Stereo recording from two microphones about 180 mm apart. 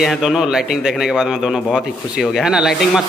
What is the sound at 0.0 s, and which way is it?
A man's voice, centre (ahead or behind).